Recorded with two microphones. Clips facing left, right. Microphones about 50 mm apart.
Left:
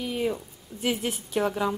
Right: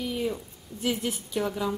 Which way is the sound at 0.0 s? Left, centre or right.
Left.